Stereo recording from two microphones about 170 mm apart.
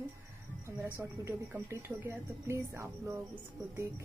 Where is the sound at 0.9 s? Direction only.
15° right (ahead or behind).